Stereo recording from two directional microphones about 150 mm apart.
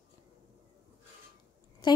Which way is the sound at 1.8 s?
30° left (ahead or behind).